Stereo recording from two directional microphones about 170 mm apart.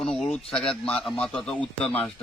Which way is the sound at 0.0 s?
Centre (ahead or behind).